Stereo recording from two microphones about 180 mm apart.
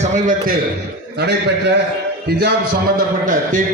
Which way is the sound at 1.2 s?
65° right (ahead or behind).